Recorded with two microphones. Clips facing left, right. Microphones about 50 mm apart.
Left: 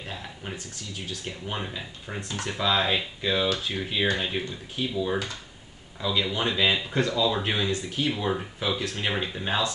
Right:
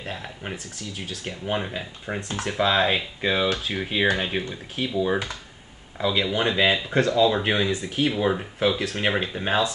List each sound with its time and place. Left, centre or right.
0.2 s speech: right
2.1 s speech: right
2.6 s speech: right
6.9 s speech: right
7.2 s speech: right
8.5 s speech: right
9.1 s speech: right